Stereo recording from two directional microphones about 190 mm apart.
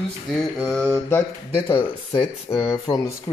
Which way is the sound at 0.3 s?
Centre (ahead or behind).